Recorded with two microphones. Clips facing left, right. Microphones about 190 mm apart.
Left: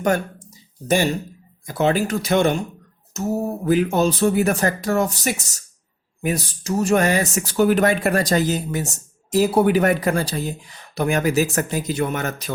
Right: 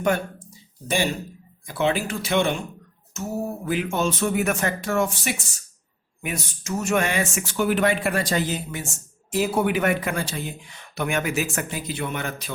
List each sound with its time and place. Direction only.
0.0 s speech: 40° left (ahead or behind)
1.6 s speech: 40° left (ahead or behind)